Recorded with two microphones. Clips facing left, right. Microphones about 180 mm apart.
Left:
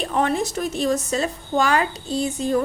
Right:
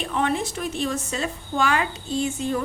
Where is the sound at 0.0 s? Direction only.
40° left (ahead or behind).